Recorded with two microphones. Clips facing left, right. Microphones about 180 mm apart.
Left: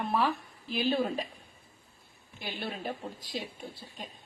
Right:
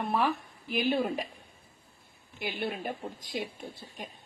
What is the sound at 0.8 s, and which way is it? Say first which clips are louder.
Speech: right 1 dB; 15° right (ahead or behind).